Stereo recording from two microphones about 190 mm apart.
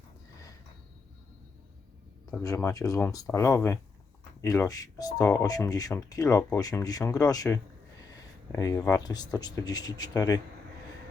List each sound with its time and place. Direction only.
2.6 s speech: 15° left (ahead or behind)